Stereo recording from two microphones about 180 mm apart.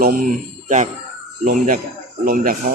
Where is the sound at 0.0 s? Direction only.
50° right (ahead or behind).